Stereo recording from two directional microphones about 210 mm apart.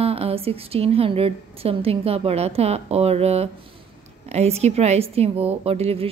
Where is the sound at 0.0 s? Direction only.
30° right (ahead or behind).